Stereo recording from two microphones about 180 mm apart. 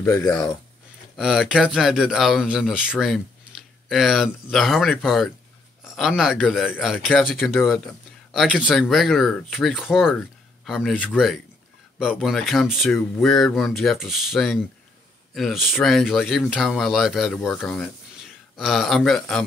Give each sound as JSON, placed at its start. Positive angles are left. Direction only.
{"t": 0.0, "sound": "speech", "side_deg": 15}
{"t": 1.1, "sound": "speech", "side_deg": 0}